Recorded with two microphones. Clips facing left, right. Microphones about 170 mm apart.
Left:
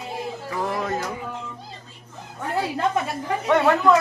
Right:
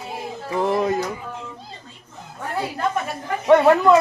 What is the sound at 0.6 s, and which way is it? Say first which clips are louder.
Music: right 7 dB; 25° right (ahead or behind).